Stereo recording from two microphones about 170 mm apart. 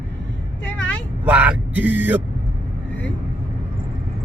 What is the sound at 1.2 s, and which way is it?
Speech, 10° right (ahead or behind).